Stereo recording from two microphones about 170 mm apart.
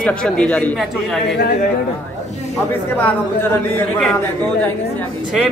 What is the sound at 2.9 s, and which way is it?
A man's voice, 10° left (ahead or behind).